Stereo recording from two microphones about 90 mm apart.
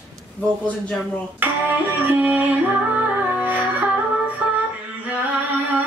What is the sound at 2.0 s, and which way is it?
Music, 20° right (ahead or behind).